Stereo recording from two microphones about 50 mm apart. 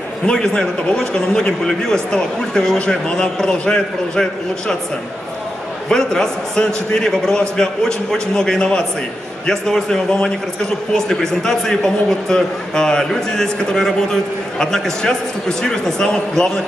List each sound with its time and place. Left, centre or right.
0.3 s a man's voice: centre
5.9 s a man's voice: centre